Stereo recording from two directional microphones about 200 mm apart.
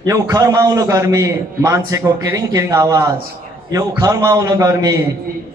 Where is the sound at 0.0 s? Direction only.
20° right (ahead or behind).